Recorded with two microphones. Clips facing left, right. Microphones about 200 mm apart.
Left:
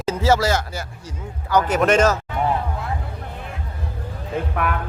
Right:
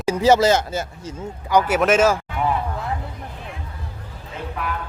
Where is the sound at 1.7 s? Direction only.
5° right (ahead or behind).